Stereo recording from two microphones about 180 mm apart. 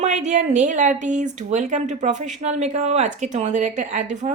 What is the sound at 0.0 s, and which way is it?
Speech, 40° right (ahead or behind).